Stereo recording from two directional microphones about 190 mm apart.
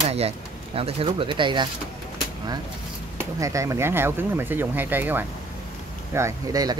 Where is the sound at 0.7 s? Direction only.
30° right (ahead or behind).